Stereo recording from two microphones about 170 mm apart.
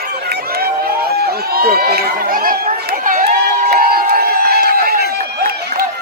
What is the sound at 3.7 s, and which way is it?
Crowd, 65° right (ahead or behind).